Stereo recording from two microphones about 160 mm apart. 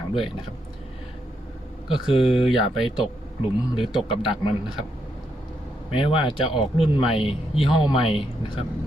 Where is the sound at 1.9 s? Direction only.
30° left (ahead or behind).